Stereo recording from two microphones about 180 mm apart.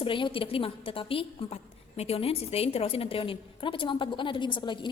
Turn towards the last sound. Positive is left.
turn(degrees=25)  # may be behind; listen again after turning